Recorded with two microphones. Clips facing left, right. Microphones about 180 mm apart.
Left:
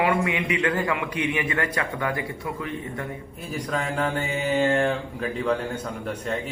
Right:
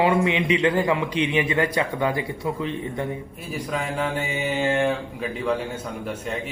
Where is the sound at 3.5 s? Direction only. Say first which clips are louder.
Even; 5° right (ahead or behind).